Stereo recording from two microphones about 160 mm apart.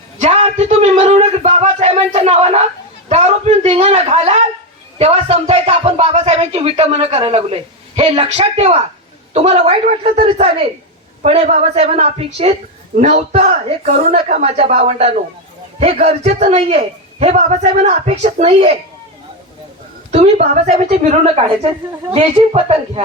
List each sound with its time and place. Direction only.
0.2 s a sound: 45° right (ahead or behind)
4.9 s a man's voice: 40° right (ahead or behind)
20.1 s a man's voice: 40° right (ahead or behind)